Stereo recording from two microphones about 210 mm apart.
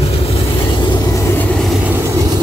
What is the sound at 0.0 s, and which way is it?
Vehicle, 25° left (ahead or behind).